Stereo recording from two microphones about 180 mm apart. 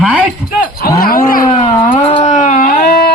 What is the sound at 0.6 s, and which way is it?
Cattle, 55° left (ahead or behind).